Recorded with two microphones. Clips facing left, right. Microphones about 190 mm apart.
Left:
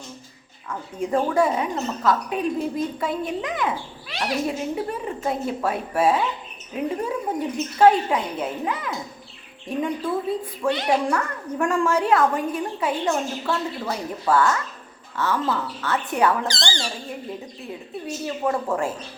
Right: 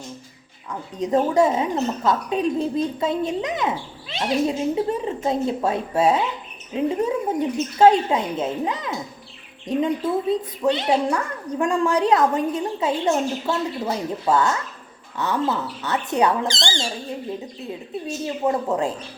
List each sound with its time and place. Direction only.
0.7 s a woman's voice: 20° right (ahead or behind)
18.3 s a woman's voice: 20° right (ahead or behind)